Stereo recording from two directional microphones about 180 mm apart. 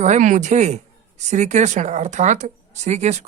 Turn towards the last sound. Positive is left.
turn(degrees=-40)  # may be behind; listen again after turning